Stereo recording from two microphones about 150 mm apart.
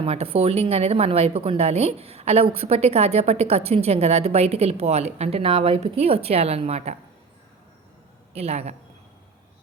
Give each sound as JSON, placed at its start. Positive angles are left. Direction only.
{"t": 0.0, "sound": "a woman's voice", "side_deg": -40}
{"t": 8.3, "sound": "a man's voice", "side_deg": -45}